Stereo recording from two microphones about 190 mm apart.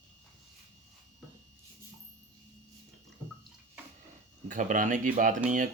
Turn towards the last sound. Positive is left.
turn(degrees=-45)  # may be behind; listen again after turning